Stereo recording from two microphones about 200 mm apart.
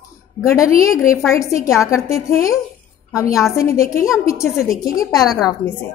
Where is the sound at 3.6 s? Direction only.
15° left (ahead or behind).